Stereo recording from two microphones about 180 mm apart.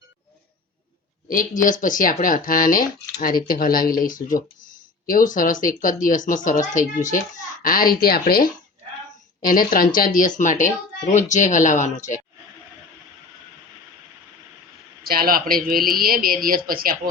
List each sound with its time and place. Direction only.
1.6 s speech: 50° left (ahead or behind)
15.0 s a man's voice: 55° right (ahead or behind)